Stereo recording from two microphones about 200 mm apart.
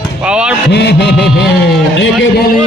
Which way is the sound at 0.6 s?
55° left (ahead or behind).